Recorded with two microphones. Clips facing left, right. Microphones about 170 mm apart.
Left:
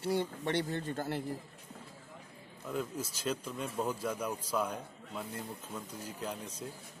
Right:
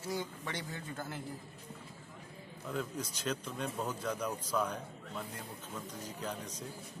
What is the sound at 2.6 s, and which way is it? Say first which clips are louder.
A man's voice: left 2 dB; 5° left (ahead or behind).